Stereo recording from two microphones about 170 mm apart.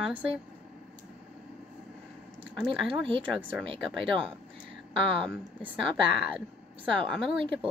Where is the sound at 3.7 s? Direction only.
30° right (ahead or behind).